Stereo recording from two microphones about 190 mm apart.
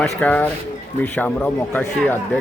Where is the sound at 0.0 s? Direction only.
5° left (ahead or behind).